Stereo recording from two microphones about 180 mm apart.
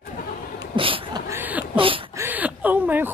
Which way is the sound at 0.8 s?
30° right (ahead or behind).